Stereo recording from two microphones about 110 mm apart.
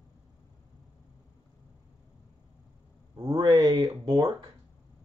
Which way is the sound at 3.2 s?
50° right (ahead or behind).